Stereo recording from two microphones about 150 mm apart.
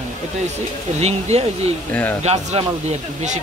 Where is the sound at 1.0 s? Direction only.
45° right (ahead or behind).